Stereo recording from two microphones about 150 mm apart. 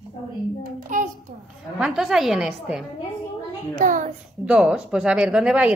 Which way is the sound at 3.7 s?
60° right (ahead or behind).